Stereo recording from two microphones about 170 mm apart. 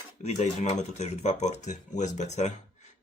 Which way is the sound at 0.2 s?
40° left (ahead or behind).